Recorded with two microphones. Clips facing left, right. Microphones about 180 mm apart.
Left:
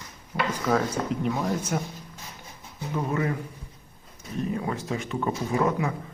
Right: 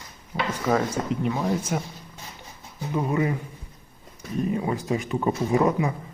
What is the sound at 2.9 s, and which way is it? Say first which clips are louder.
Speech: right 3 dB; 15° right (ahead or behind).